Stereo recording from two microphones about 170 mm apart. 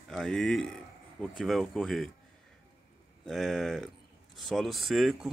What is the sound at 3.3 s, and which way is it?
Speech, centre (ahead or behind).